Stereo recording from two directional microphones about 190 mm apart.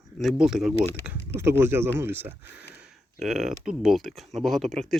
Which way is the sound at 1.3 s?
15° right (ahead or behind).